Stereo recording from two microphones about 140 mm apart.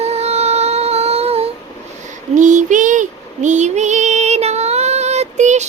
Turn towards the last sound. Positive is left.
turn(degrees=-55)  # may be behind; listen again after turning